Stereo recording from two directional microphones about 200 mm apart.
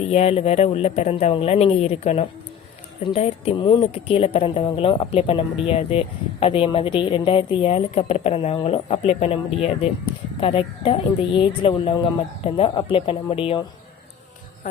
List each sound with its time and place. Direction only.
0.1 s speech: 30° left (ahead or behind)